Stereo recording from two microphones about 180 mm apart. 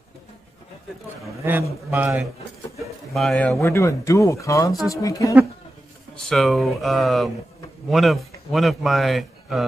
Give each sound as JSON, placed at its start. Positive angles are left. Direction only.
{"t": 1.4, "sound": "a man's voice", "side_deg": -15}
{"t": 3.6, "sound": "speech", "side_deg": 15}
{"t": 6.1, "sound": "a man's voice", "side_deg": 0}